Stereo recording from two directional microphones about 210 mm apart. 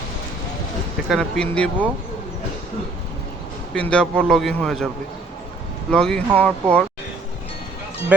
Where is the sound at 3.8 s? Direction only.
5° left (ahead or behind).